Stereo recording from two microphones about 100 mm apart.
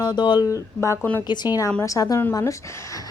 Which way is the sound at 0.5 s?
30° left (ahead or behind).